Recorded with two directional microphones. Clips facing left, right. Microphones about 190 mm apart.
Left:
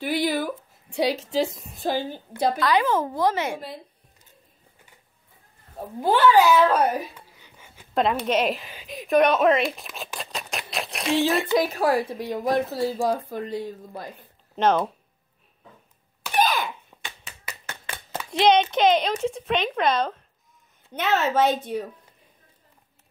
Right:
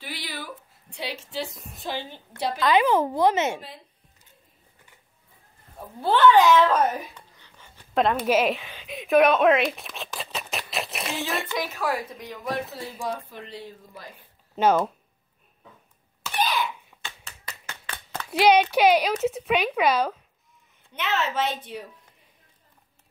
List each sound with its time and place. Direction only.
0.0 s a sound: 50° left (ahead or behind)
0.9 s a woman's voice: 40° left (ahead or behind)
2.6 s speech: 20° right (ahead or behind)
5.9 s a child's voice: 10° left (ahead or behind)
11.5 s speech: 35° left (ahead or behind); by 14.1 s 50° left (ahead or behind)
14.5 s speech: 5° right (ahead or behind)
16.3 s a sound: 45° left (ahead or behind)
16.9 s finger snapping: 15° left (ahead or behind)
18.4 s speech: 10° right (ahead or behind)
20.9 s a woman's voice: 45° left (ahead or behind)